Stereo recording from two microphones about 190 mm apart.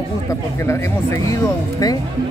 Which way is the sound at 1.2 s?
20° left (ahead or behind).